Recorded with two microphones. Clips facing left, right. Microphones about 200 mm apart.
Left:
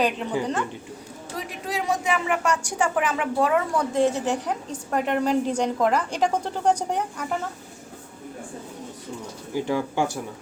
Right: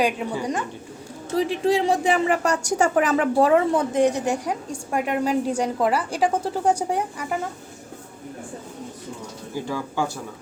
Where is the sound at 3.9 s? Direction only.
15° right (ahead or behind).